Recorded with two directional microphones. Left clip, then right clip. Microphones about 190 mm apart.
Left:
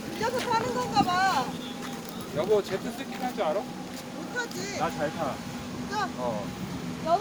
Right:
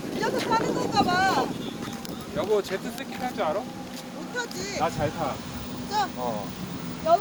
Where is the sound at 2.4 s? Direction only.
35° right (ahead or behind).